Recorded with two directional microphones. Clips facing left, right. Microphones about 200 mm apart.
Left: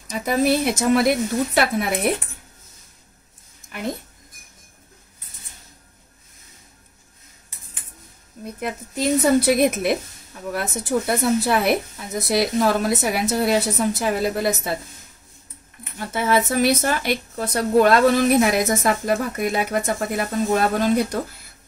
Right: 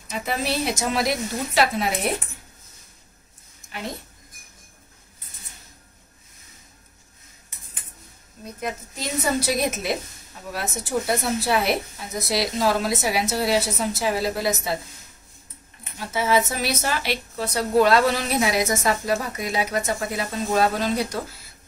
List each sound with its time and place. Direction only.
0.2 s a woman's voice: 45° left (ahead or behind)
8.5 s a woman's voice: 55° left (ahead or behind)
16.0 s a woman's voice: 55° left (ahead or behind)